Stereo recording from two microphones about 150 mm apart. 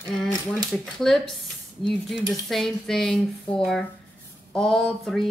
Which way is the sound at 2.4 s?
Centre (ahead or behind).